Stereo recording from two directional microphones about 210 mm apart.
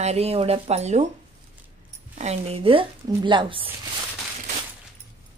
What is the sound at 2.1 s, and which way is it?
Speech, 30° right (ahead or behind).